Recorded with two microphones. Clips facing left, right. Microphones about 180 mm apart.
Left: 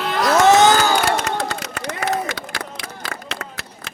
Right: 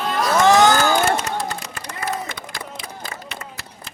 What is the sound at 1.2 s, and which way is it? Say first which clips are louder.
Run: left 2 dB; 70° left (ahead or behind).